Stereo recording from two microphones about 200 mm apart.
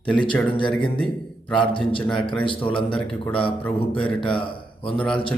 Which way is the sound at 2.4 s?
25° left (ahead or behind).